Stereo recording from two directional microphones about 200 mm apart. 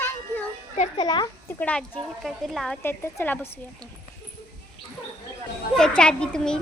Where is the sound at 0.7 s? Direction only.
25° left (ahead or behind).